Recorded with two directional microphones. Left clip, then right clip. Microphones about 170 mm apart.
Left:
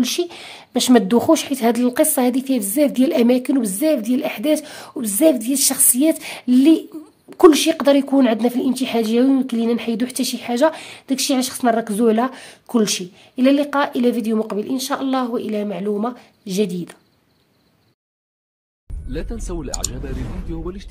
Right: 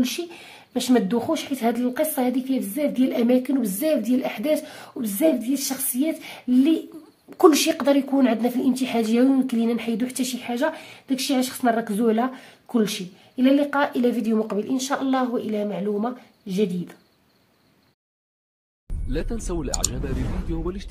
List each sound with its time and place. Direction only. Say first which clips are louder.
0.0 s a woman's voice: left 6 dB; 45° left (ahead or behind)
7.2 s a woman's voice: left 5 dB; 25° left (ahead or behind)
19.0 s speech: even; centre (ahead or behind)